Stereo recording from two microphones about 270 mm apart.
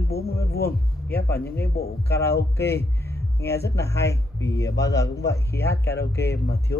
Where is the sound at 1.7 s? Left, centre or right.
Left.